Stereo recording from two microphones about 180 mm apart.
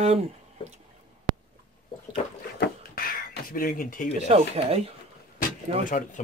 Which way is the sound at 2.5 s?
60° left (ahead or behind).